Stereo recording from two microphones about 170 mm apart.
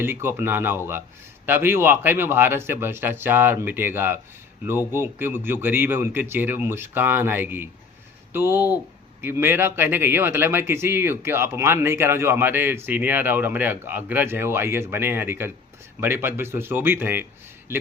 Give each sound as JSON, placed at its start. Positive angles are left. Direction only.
{"t": 0.0, "sound": "speech", "side_deg": -15}